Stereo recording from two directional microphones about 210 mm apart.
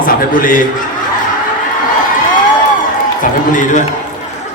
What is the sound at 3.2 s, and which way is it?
Speech, 40° left (ahead or behind).